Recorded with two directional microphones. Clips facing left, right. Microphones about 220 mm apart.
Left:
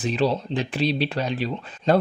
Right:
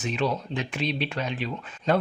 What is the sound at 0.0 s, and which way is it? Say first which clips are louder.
Speech: left 5 dB; 35° left (ahead or behind).